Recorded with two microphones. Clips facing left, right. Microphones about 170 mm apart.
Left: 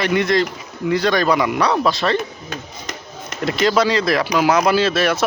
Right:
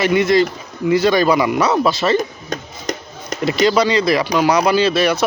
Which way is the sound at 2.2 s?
40° right (ahead or behind).